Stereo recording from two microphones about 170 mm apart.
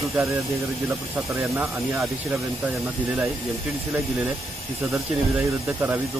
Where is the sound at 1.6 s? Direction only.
15° right (ahead or behind).